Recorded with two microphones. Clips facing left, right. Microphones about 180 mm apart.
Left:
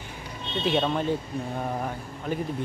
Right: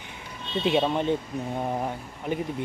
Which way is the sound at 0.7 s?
20° right (ahead or behind).